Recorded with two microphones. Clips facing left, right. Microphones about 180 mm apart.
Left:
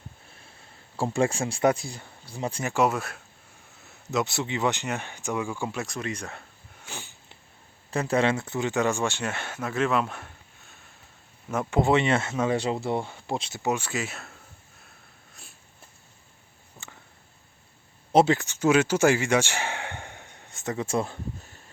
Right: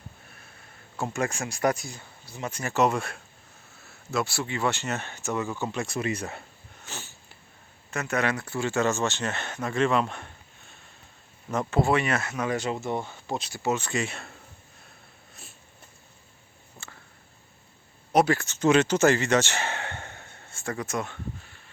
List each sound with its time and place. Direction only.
0.9 s speech: 30° left (ahead or behind)
2.6 s speech: 10° left (ahead or behind)
3.8 s speech: 20° left (ahead or behind); by 6.4 s 5° right (ahead or behind)
6.8 s sniff: 15° left (ahead or behind)
7.9 s speech: 30° left (ahead or behind); by 10.8 s 5° left (ahead or behind)
11.7 s speech: 20° left (ahead or behind)
12.9 s speech: 10° left (ahead or behind)
13.3 s speech: 25° left (ahead or behind); by 14.3 s centre (ahead or behind)
16.7 s a sound: 15° left (ahead or behind)
18.1 s speech: 25° left (ahead or behind)